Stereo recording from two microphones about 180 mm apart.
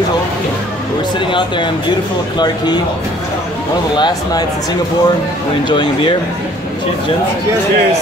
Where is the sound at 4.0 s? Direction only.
20° left (ahead or behind).